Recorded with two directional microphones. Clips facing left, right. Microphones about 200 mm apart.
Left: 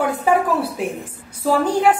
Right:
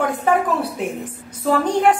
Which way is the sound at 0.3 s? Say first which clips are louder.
Left 1 dB; 10° left (ahead or behind).